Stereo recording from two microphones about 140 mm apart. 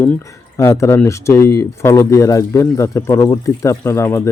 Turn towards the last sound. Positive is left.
turn(degrees=20)  # may be behind; listen again after turning